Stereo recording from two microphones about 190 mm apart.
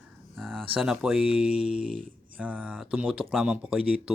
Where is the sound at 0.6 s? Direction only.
5° right (ahead or behind).